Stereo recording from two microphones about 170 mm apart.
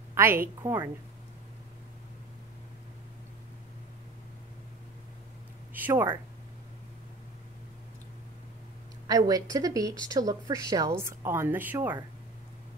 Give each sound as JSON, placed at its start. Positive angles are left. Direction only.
{"t": 0.1, "sound": "a woman's voice", "side_deg": -15}
{"t": 5.7, "sound": "a sound", "side_deg": -10}
{"t": 9.0, "sound": "speech", "side_deg": -20}